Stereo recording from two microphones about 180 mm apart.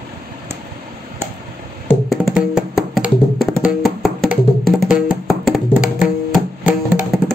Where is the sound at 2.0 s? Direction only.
5° right (ahead or behind).